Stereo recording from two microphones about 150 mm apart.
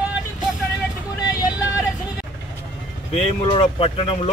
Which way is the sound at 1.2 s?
25° left (ahead or behind).